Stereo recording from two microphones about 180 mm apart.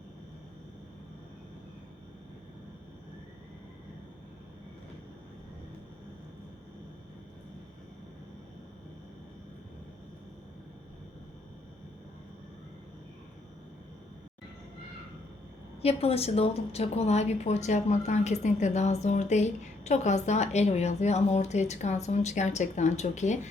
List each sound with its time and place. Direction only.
15.8 s a woman's voice: 35° left (ahead or behind)